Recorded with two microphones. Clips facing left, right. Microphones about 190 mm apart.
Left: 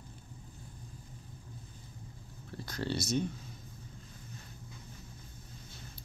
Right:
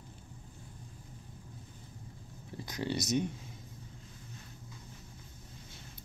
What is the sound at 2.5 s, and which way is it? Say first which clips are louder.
Speech: right 1 dB; 15° right (ahead or behind).